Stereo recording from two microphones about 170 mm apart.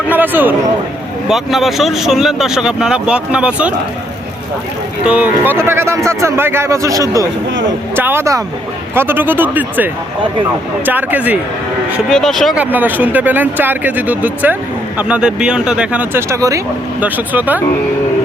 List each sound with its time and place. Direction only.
0.1 s speech: 10° right (ahead or behind)
5.0 s a man's voice: 10° right (ahead or behind)
12.0 s speech: 5° left (ahead or behind)
12.5 s a man's voice: 10° right (ahead or behind)